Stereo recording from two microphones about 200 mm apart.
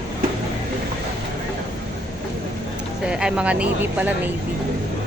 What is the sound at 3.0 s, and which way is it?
Speech, 5° right (ahead or behind).